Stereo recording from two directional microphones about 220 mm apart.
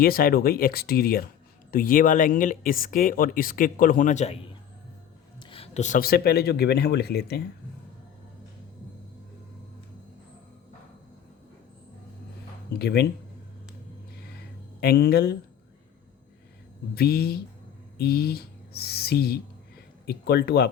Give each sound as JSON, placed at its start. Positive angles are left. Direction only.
{"t": 0.0, "sound": "speech", "side_deg": 40}
{"t": 5.5, "sound": "speech", "side_deg": 30}
{"t": 12.7, "sound": "speech", "side_deg": 45}
{"t": 14.8, "sound": "speech", "side_deg": 45}
{"t": 16.9, "sound": "speech", "side_deg": 45}